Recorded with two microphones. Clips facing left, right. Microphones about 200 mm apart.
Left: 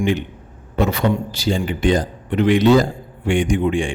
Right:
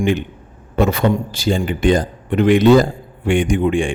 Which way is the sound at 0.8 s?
50° right (ahead or behind).